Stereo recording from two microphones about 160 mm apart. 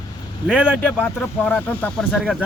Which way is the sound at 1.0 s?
10° left (ahead or behind).